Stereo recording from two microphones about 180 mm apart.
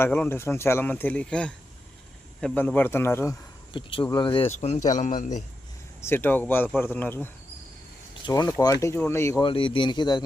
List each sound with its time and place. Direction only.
0.0 s speech: 10° left (ahead or behind)
3.7 s speech: 30° left (ahead or behind); by 5.4 s 45° left (ahead or behind)
6.0 s speech: 10° left (ahead or behind)
8.4 s speech: 20° left (ahead or behind)
9.4 s speech: 30° left (ahead or behind)